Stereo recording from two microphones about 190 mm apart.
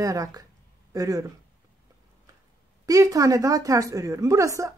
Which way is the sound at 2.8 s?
15° right (ahead or behind).